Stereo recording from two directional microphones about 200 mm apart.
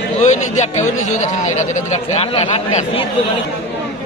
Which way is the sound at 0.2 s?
35° left (ahead or behind).